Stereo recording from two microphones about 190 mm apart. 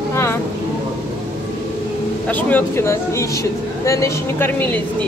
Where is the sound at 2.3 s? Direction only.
10° left (ahead or behind).